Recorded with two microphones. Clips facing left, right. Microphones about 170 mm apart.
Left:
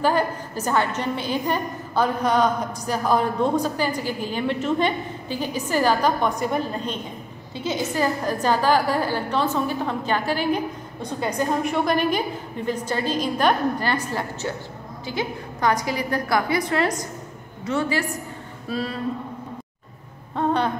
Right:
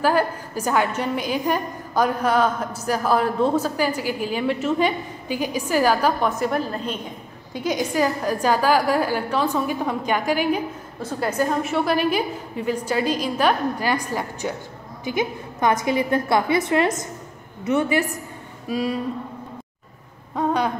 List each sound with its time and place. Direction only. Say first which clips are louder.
0.0 s a woman's voice: right 1 dB; 10° right (ahead or behind)
20.3 s a woman's voice: even; 10° right (ahead or behind)